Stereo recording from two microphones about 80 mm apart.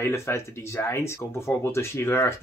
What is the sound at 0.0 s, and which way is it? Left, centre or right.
Speech, left.